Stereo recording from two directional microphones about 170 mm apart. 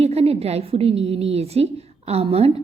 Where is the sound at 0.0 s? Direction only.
35° right (ahead or behind).